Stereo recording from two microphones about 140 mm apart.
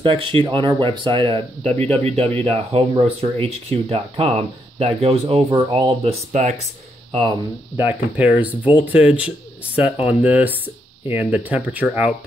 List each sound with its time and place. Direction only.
0.0 s speech: 40° right (ahead or behind)
7.7 s speech: 15° right (ahead or behind)